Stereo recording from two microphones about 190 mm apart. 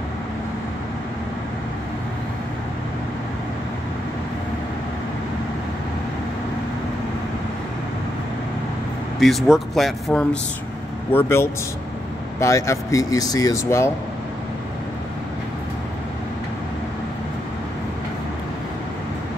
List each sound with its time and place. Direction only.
9.2 s speech: centre (ahead or behind)